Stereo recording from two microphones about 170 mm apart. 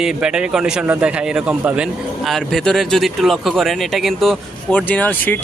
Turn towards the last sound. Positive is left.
turn(degrees=10)  # may be behind; listen again after turning